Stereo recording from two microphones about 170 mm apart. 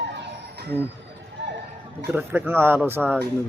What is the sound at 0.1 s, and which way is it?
Music, 90° right.